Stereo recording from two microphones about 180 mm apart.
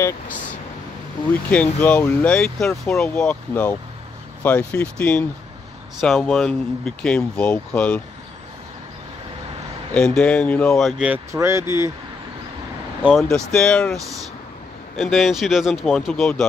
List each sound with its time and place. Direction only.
1.5 s speech: 10° left (ahead or behind)
9.9 s speech: 5° left (ahead or behind)
11.3 s speech: 15° right (ahead or behind)
13.0 s speech: centre (ahead or behind)